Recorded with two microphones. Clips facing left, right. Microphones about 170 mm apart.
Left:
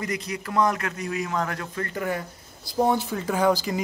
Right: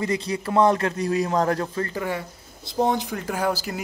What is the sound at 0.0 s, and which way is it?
A man's voice, 30° right (ahead or behind).